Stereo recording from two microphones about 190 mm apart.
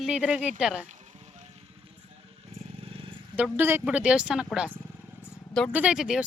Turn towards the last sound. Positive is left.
turn(degrees=-5)  # may be behind; listen again after turning